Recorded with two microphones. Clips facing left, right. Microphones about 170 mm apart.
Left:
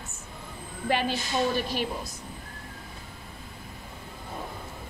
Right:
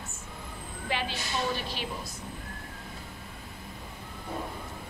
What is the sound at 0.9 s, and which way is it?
Speech, 45° left (ahead or behind).